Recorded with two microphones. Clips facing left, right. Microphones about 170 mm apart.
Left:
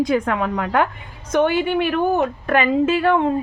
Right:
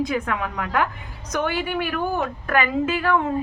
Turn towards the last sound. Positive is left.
turn(degrees=25)  # may be behind; listen again after turning